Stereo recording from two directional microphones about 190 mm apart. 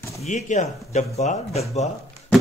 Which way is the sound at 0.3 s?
40° left (ahead or behind).